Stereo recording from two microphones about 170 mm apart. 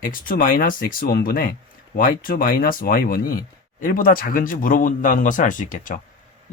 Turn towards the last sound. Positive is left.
turn(degrees=50)  # may be behind; listen again after turning